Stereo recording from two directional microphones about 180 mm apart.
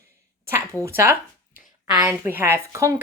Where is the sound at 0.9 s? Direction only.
15° right (ahead or behind).